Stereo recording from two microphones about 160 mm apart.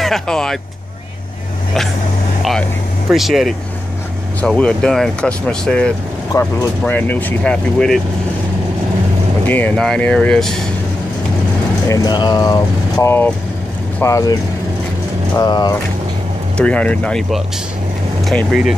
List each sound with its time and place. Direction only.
0.0 s speech: 5° left (ahead or behind)
3.1 s speech: centre (ahead or behind)
6.3 s speech: 20° left (ahead or behind); by 8.0 s 5° left (ahead or behind)
9.5 s speech: 10° left (ahead or behind)
11.9 s speech: 25° left (ahead or behind)
15.3 s speech: 25° left (ahead or behind)
16.5 s speech: 10° left (ahead or behind)